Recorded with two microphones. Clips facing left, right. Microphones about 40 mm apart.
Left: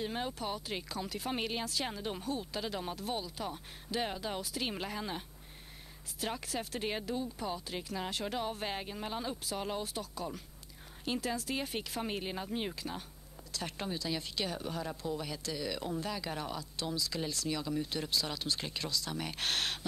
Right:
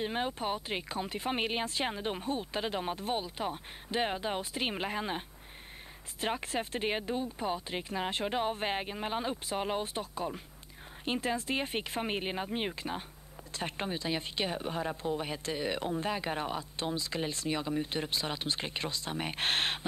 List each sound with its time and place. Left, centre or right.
0.0 s speech: right
6.2 s speech: right